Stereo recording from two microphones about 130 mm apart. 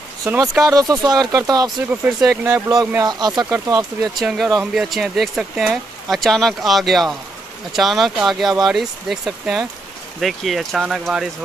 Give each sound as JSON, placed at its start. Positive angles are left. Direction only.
{"t": 0.2, "sound": "speech", "side_deg": -25}
{"t": 4.2, "sound": "speech", "side_deg": 0}